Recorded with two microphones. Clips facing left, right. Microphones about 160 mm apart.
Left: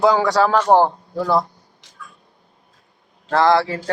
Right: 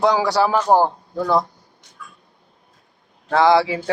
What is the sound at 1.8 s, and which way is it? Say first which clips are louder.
Cat: even; 90° left.